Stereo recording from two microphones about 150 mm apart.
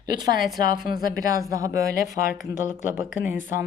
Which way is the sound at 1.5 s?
20° right (ahead or behind).